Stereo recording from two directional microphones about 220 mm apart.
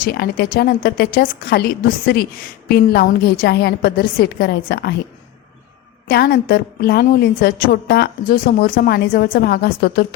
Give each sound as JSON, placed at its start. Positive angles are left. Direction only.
{"t": 0.0, "sound": "a woman's voice", "side_deg": 45}
{"t": 6.1, "sound": "a woman's voice", "side_deg": 45}